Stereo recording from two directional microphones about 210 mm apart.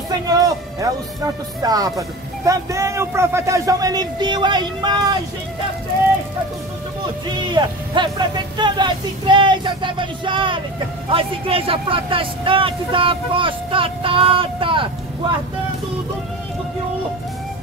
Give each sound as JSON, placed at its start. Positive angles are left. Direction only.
{"t": 0.3, "sound": "speech", "side_deg": -15}
{"t": 7.5, "sound": "speech", "side_deg": -20}